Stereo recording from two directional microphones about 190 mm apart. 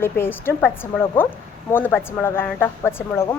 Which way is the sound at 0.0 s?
10° left (ahead or behind).